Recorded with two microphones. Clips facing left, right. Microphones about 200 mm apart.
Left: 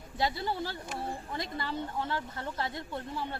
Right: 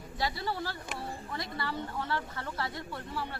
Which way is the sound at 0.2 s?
20° left (ahead or behind).